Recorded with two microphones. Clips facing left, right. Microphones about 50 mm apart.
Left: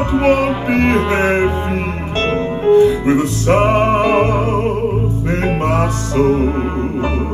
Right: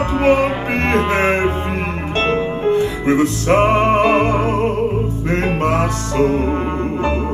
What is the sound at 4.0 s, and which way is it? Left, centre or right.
Music, right.